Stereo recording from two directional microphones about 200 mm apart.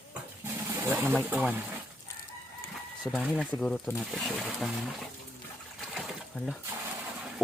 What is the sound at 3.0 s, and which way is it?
Speech, 5° right (ahead or behind).